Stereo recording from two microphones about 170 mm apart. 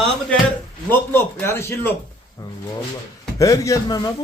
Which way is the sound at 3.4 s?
20° left (ahead or behind).